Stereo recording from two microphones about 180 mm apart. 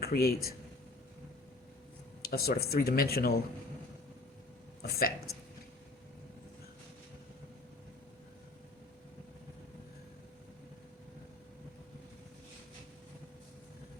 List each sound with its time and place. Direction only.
0.0 s speech: 60° left (ahead or behind)
2.2 s speech: 55° left (ahead or behind)
4.8 s speech: 55° left (ahead or behind)